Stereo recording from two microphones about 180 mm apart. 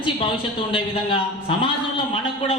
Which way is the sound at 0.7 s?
30° left (ahead or behind).